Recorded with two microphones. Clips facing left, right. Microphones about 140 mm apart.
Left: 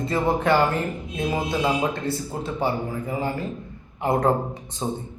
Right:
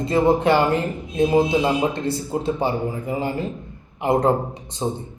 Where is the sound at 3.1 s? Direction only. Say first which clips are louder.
Right 2 dB; 20° right (ahead or behind).